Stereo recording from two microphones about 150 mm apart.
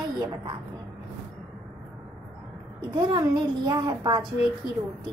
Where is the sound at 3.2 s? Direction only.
30° right (ahead or behind).